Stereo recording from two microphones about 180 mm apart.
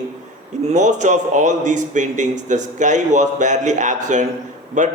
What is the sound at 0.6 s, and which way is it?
A man's voice, 40° right (ahead or behind).